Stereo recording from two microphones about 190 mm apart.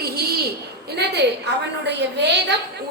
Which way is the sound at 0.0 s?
55° right (ahead or behind).